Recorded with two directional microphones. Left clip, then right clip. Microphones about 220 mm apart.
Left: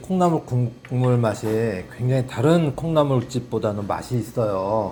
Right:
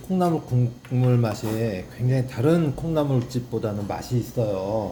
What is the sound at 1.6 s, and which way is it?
Speech, 5° right (ahead or behind).